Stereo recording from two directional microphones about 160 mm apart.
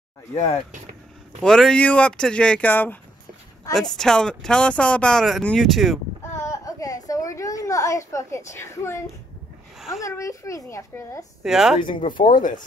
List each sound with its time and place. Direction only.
0.3 s speech: 40° left (ahead or behind)
1.4 s speech: 5° left (ahead or behind)
6.5 s a sound: 20° left (ahead or behind)
9.8 s a sound: centre (ahead or behind)
10.0 s a child's voice: 20° left (ahead or behind)
11.4 s speech: 5° right (ahead or behind)
11.8 s speech: 30° left (ahead or behind)
12.3 s speech: 55° left (ahead or behind)